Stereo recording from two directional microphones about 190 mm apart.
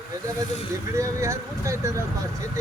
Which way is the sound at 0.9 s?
15° right (ahead or behind).